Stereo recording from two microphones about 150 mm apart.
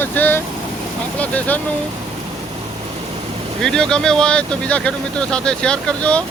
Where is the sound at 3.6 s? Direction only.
5° left (ahead or behind).